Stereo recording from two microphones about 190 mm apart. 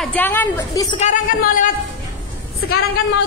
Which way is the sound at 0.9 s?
40° left (ahead or behind).